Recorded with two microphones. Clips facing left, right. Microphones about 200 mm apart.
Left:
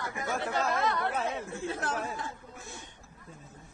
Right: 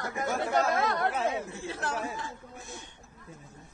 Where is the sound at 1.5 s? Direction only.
50° left (ahead or behind).